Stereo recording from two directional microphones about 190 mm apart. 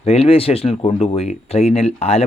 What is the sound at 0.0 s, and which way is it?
Speech, 30° left (ahead or behind).